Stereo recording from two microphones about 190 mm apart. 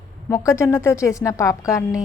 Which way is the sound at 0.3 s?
15° left (ahead or behind).